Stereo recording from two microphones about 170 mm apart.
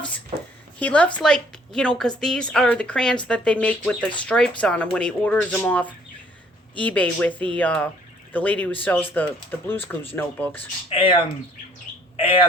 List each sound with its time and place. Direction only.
0.8 s a woman's voice: 10° left (ahead or behind)
10.8 s speech: 30° left (ahead or behind)